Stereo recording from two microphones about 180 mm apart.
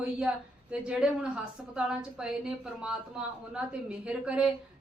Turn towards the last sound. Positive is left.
turn(degrees=-5)  # may be behind; listen again after turning